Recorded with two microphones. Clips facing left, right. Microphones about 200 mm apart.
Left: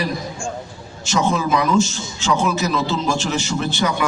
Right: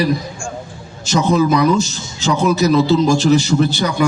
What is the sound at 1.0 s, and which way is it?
A man's voice, 40° right (ahead or behind).